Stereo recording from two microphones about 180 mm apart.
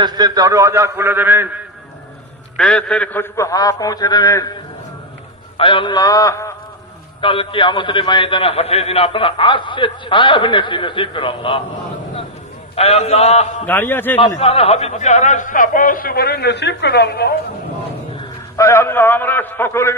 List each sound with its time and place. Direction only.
0.0 s a man's voice: 20° right (ahead or behind)
2.5 s a man's voice: 5° left (ahead or behind); by 4.5 s 20° left (ahead or behind)
5.6 s a man's voice: 30° left (ahead or behind)
7.2 s a man's voice: 30° left (ahead or behind)
12.7 s a man's voice: 35° left (ahead or behind)
13.7 s a man's voice: 10° left (ahead or behind)
14.4 s speech: 35° left (ahead or behind); by 17.4 s 60° left (ahead or behind)
18.6 s a man's voice: 15° left (ahead or behind)